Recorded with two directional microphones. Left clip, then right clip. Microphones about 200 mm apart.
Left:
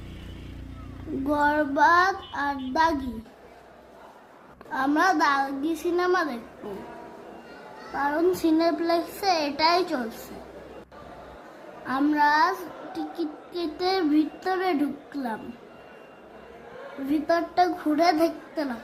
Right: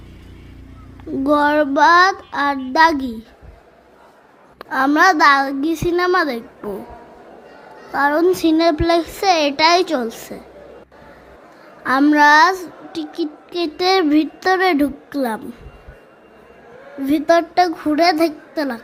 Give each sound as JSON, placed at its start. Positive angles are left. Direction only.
{"t": 1.3, "sound": "a child's voice", "side_deg": -20}
{"t": 4.5, "sound": "a sound", "side_deg": -30}
{"t": 4.9, "sound": "a child's voice", "side_deg": -20}
{"t": 7.9, "sound": "a child's voice", "side_deg": -35}
{"t": 8.4, "sound": "a child's voice", "side_deg": -20}
{"t": 11.9, "sound": "a child's voice", "side_deg": -30}
{"t": 17.1, "sound": "a child's voice", "side_deg": -25}